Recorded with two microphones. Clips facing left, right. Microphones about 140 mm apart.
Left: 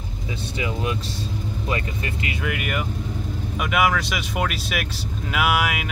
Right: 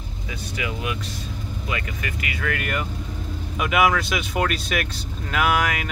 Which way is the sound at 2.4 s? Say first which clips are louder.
Right 1 dB; 10° left (ahead or behind).